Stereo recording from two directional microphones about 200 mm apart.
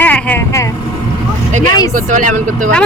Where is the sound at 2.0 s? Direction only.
40° right (ahead or behind).